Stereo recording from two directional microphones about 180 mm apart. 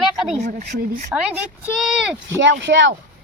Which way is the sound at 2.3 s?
90° right.